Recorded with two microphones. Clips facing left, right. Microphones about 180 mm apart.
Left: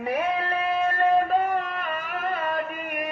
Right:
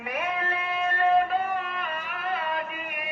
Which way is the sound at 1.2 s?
40° left (ahead or behind).